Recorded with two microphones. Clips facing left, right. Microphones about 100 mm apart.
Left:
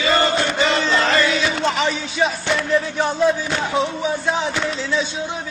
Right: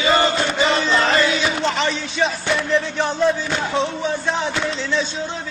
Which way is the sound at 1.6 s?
5° left (ahead or behind).